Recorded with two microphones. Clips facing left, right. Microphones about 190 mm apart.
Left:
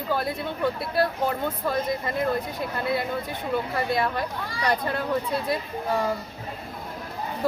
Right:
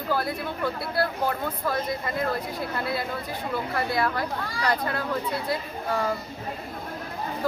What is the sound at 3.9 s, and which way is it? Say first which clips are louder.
Speech: left 1 dB; 20° left (ahead or behind).